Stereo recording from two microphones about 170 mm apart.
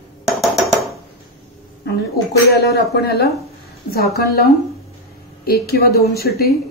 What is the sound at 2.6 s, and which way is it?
A woman's voice, 70° left (ahead or behind).